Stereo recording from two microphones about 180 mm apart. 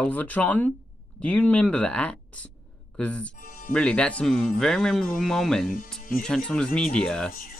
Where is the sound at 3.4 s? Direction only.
50° left (ahead or behind).